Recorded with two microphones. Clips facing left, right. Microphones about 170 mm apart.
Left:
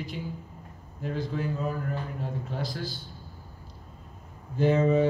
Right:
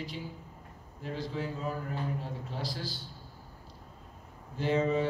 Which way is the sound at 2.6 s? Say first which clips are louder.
Left 2 dB; 50° left (ahead or behind).